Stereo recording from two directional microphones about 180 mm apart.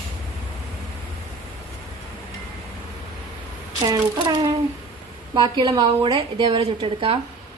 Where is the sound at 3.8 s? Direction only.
20° right (ahead or behind).